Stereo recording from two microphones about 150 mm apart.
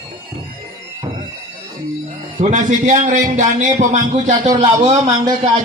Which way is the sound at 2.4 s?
50° right (ahead or behind).